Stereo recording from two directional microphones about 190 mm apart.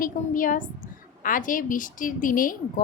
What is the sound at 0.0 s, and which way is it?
A woman's voice, 45° left (ahead or behind).